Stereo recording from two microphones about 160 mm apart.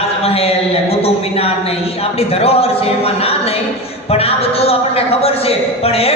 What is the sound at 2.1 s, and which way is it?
A woman's voice, 40° left (ahead or behind).